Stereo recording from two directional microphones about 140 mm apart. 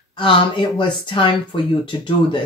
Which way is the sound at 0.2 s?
40° left (ahead or behind).